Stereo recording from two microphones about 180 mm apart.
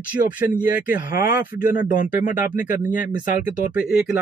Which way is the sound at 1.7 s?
45° left (ahead or behind).